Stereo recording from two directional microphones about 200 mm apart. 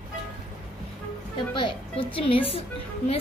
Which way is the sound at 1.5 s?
25° left (ahead or behind).